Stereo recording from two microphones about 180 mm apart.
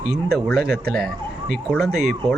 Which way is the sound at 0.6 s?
60° right (ahead or behind).